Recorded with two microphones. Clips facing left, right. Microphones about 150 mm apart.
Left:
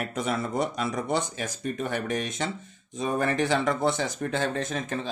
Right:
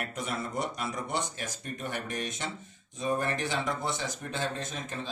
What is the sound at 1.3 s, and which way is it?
Speech, 90° left.